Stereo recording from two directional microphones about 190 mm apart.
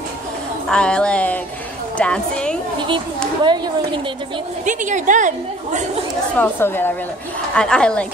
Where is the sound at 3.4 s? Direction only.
25° right (ahead or behind).